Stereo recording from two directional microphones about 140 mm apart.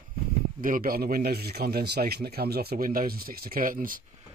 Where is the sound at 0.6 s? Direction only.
85° right.